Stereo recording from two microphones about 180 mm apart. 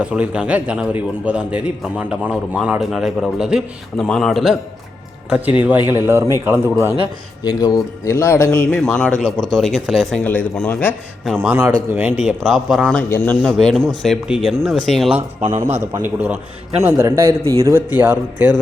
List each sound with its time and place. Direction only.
0.0 s a man's voice: 5° right (ahead or behind)
6.1 s speech: 15° right (ahead or behind)
7.4 s a man's voice: 20° left (ahead or behind)
11.3 s a man's voice: 5° right (ahead or behind)
15.4 s speech: 15° right (ahead or behind)